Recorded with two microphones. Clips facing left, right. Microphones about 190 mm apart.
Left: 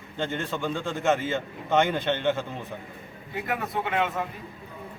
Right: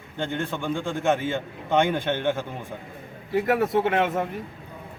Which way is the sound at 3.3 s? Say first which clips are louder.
Right 9 dB; 75° right (ahead or behind).